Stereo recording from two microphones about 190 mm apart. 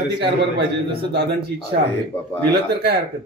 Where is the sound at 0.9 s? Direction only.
55° right (ahead or behind).